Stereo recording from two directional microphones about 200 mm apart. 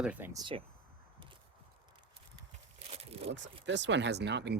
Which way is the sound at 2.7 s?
30° right (ahead or behind).